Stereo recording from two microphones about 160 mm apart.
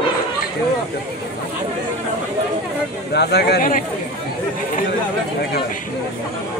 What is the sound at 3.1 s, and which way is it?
Speech, 90° left.